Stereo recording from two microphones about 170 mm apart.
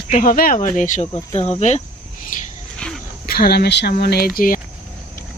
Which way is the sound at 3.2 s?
65° left (ahead or behind).